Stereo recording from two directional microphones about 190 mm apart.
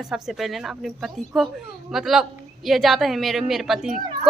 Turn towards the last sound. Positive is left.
turn(degrees=0)  # may be behind; listen again after turning